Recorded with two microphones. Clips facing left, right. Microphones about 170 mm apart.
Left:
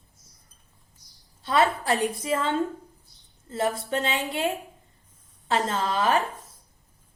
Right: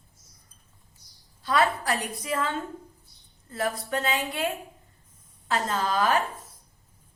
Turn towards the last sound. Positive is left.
turn(degrees=25)  # may be behind; listen again after turning